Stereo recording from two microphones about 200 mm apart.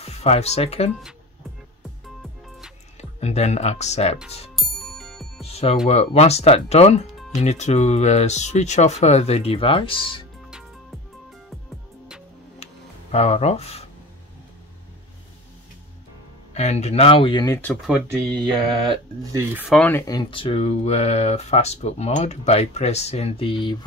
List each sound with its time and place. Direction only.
0.0 s speech: 30° left (ahead or behind)
3.0 s speech: 35° left (ahead or behind)
4.6 s music: centre (ahead or behind)
5.4 s music: 30° left (ahead or behind)
5.9 s speech: 35° left (ahead or behind)
13.1 s speech: 30° left (ahead or behind)
16.5 s speech: 35° left (ahead or behind)
17.8 s speech: centre (ahead or behind)
19.7 s speech: 10° left (ahead or behind); by 23.8 s 25° left (ahead or behind)